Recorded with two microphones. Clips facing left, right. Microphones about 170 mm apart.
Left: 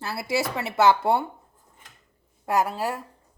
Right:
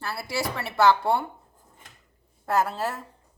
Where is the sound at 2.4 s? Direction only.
15° left (ahead or behind).